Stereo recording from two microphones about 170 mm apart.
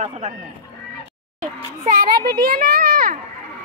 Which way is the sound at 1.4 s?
55° right (ahead or behind).